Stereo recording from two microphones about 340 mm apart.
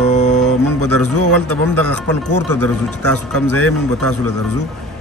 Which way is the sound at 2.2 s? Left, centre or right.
Left.